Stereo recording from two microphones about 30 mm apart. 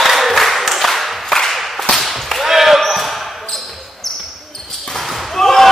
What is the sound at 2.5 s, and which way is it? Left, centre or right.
Basketball bounce, centre.